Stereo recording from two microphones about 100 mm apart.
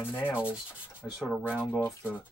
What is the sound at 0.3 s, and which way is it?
Rub, 10° right (ahead or behind).